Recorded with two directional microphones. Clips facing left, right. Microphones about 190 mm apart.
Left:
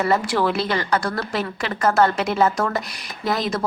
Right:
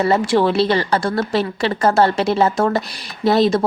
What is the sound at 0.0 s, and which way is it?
Speech, 25° right (ahead or behind).